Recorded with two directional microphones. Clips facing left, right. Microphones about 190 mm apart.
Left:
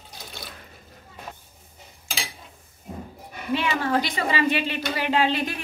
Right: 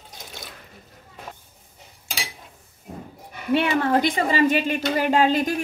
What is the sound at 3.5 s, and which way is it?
A woman's voice, 55° right (ahead or behind).